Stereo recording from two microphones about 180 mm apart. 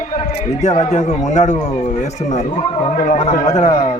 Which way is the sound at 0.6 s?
40° left (ahead or behind).